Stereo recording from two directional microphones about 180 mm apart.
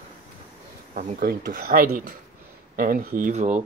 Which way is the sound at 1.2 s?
60° right (ahead or behind).